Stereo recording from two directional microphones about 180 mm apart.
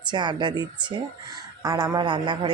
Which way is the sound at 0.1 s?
25° right (ahead or behind).